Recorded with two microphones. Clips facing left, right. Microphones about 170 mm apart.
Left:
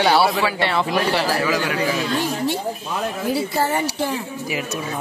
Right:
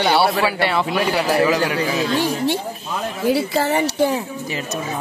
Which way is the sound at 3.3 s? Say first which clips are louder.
Right 2 dB; 75° right (ahead or behind).